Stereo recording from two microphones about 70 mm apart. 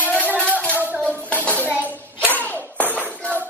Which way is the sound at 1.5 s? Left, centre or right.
Left.